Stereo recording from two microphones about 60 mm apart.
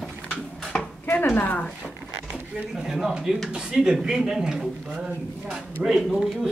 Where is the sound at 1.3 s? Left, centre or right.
Left.